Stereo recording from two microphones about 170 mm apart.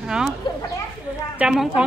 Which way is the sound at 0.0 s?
5° right (ahead or behind).